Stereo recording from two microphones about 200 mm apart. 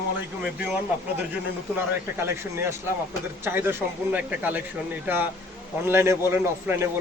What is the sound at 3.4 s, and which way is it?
A man's voice, 10° right (ahead or behind).